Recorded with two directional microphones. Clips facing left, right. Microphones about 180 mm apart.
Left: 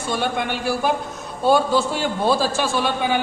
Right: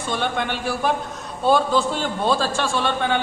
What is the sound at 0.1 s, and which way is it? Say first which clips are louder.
A man's voice: left 1 dB; 5° left (ahead or behind).